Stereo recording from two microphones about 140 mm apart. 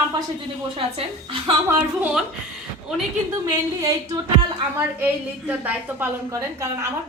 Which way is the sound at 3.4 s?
20° right (ahead or behind).